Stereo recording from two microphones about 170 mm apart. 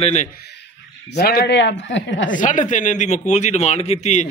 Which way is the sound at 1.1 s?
65° left (ahead or behind).